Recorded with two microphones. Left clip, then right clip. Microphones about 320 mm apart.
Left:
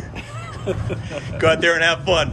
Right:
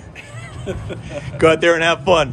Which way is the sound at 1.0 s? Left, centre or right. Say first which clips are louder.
Right 9 dB; centre.